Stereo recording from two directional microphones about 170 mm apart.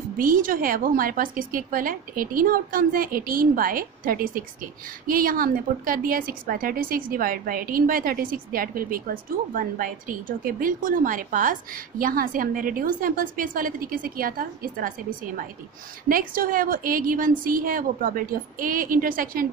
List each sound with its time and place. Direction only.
0.2 s a woman's voice: 55° right (ahead or behind)